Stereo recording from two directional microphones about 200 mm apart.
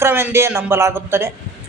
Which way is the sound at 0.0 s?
10° right (ahead or behind).